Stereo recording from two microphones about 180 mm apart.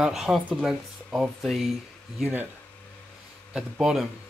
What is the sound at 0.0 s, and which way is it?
Speech, centre (ahead or behind).